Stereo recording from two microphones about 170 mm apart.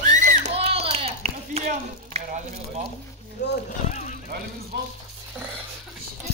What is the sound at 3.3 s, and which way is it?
Speech, 80° left.